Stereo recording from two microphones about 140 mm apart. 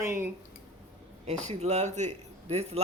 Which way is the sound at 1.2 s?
55° right (ahead or behind).